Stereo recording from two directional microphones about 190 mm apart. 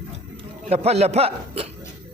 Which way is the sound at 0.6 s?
35° right (ahead or behind).